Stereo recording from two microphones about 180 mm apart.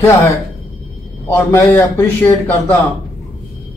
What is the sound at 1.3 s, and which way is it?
A man's voice, 15° left (ahead or behind).